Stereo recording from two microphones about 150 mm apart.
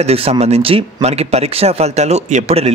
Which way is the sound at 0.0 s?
45° right (ahead or behind).